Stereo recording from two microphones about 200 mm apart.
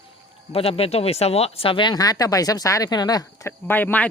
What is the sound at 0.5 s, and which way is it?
Speech, 30° left (ahead or behind).